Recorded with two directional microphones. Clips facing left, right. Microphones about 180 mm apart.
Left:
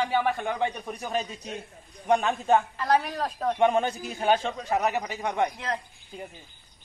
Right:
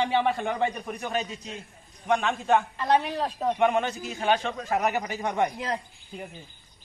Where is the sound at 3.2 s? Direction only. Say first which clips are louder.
Even; 5° right (ahead or behind).